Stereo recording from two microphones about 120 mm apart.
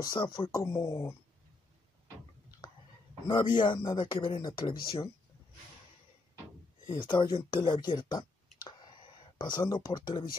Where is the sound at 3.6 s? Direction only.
40° left (ahead or behind).